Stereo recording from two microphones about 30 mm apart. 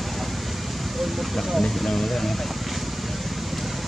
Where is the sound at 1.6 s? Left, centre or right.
Centre.